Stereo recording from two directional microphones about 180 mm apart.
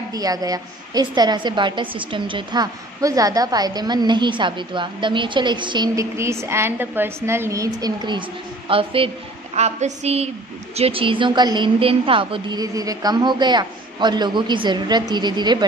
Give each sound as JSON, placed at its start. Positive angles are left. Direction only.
{"t": 0.1, "sound": "a woman's voice", "side_deg": -20}
{"t": 9.6, "sound": "a sound", "side_deg": -40}
{"t": 10.8, "sound": "a woman's voice", "side_deg": -30}